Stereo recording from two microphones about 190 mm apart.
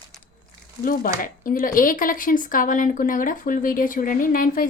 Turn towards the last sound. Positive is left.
turn(degrees=45)  # may be behind; listen again after turning